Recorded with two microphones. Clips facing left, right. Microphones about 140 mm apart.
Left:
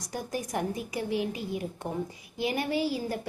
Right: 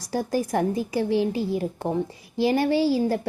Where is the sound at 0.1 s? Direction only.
30° right (ahead or behind).